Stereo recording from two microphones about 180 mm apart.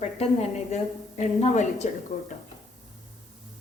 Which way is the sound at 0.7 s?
40° left (ahead or behind).